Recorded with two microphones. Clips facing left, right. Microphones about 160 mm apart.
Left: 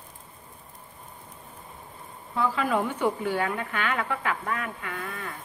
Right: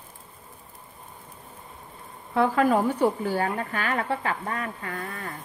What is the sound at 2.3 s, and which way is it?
Speech, 50° right (ahead or behind).